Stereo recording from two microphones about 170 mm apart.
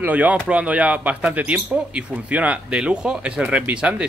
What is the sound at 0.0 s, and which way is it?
Speech, 10° right (ahead or behind).